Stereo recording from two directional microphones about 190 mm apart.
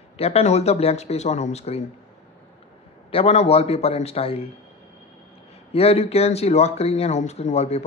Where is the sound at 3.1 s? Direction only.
35° left (ahead or behind).